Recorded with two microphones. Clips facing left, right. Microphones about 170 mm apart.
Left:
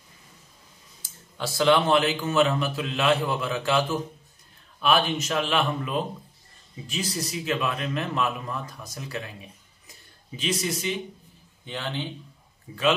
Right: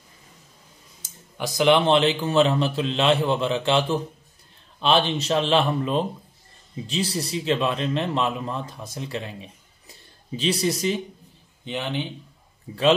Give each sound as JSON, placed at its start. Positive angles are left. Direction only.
{"t": 1.0, "sound": "a man's voice", "side_deg": -15}
{"t": 11.6, "sound": "speech", "side_deg": -20}
{"t": 12.7, "sound": "a man's voice", "side_deg": -35}